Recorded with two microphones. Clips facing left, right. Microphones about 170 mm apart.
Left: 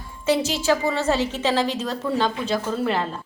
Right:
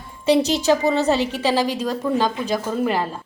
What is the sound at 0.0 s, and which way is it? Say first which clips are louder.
A woman's voice: right 4 dB; 20° right (ahead or behind).